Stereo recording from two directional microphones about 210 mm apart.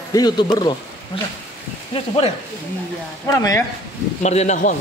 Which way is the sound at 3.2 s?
15° left (ahead or behind).